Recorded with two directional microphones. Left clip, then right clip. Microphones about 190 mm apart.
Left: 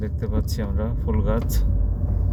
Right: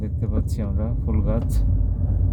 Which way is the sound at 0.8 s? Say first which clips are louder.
Left 3 dB; 5° right (ahead or behind).